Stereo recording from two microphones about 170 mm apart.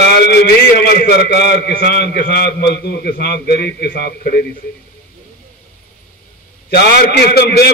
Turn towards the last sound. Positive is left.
turn(degrees=70)  # may be behind; listen again after turning